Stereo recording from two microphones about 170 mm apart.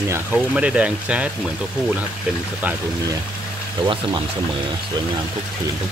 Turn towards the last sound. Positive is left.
turn(degrees=-25)  # may be behind; listen again after turning